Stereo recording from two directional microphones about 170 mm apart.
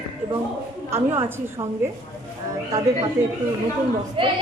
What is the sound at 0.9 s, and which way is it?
Speech, 15° right (ahead or behind).